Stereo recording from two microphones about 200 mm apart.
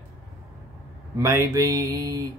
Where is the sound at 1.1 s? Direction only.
15° right (ahead or behind).